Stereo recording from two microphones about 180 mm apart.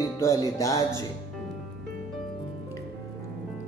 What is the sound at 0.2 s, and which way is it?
Music, 20° left (ahead or behind).